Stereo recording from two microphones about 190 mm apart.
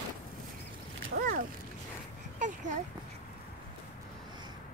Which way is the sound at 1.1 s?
50° right (ahead or behind).